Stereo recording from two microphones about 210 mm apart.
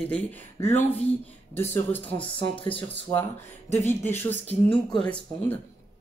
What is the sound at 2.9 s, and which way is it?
Speech, 10° left (ahead or behind).